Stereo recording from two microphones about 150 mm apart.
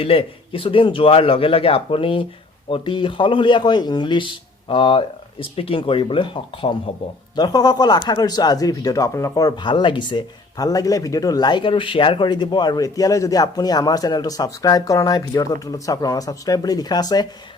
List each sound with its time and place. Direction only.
0.0 s speech: 40° left (ahead or behind)
7.3 s speech: 25° left (ahead or behind)